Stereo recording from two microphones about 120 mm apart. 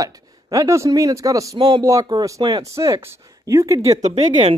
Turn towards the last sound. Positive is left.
turn(degrees=-65)  # may be behind; listen again after turning